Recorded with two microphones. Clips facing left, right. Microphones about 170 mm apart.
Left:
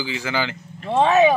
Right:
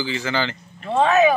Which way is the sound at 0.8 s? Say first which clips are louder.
Left 1 dB; 25° left (ahead or behind).